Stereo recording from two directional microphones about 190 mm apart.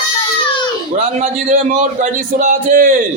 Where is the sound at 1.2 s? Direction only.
40° right (ahead or behind).